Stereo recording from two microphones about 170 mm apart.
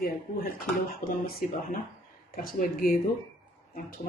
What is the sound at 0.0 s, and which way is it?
Speech, 55° left (ahead or behind).